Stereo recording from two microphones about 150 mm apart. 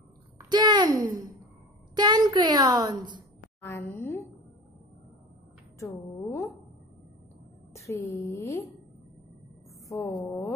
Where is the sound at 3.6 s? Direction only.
15° left (ahead or behind).